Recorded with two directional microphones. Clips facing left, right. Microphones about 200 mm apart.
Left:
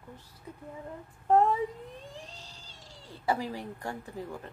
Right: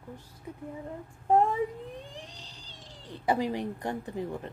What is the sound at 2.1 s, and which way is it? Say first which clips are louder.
Cat: right 1 dB; 15° right (ahead or behind).